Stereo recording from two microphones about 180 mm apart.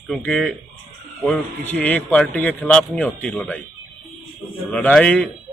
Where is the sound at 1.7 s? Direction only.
10° left (ahead or behind).